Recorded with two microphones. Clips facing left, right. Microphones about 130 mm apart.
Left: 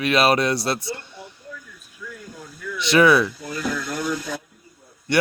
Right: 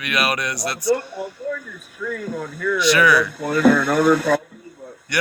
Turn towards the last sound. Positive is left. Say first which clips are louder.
# left 5 dB
turn(degrees=25)  # may be behind; listen again after turning